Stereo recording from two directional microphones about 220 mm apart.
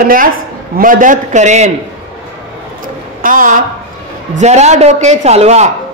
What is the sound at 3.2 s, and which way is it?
A woman's voice, 40° right (ahead or behind).